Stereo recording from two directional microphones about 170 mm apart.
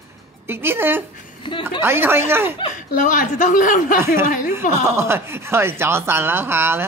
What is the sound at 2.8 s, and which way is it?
A woman's voice, 50° left (ahead or behind).